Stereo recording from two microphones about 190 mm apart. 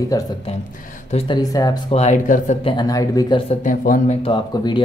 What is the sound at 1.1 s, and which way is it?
Speech, 30° left (ahead or behind).